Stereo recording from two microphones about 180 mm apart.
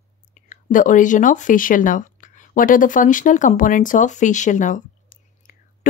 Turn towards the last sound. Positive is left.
turn(degrees=50)  # may be behind; listen again after turning